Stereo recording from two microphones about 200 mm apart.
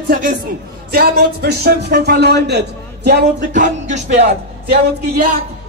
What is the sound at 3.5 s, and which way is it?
Music, 35° right (ahead or behind).